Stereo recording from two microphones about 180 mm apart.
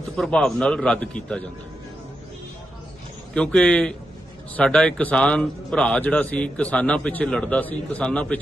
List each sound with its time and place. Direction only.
0.2 s a man's voice: 5° left (ahead or behind)
3.3 s a man's voice: 5° left (ahead or behind)